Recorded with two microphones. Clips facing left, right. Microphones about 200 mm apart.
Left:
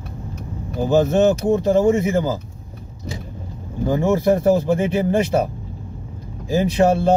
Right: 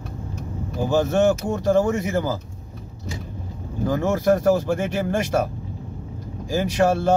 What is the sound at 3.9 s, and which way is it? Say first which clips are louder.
Speech: left 3 dB; 15° left (ahead or behind).